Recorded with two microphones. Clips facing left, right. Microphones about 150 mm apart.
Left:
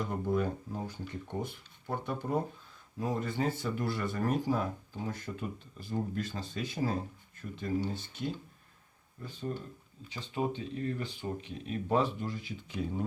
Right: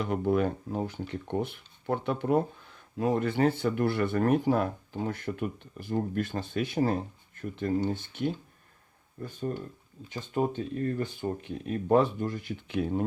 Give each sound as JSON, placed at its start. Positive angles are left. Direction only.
{"t": 0.0, "sound": "speech", "side_deg": -70}
{"t": 10.1, "sound": "speech", "side_deg": -50}